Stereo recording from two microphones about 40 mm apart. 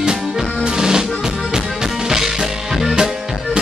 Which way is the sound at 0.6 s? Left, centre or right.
Centre.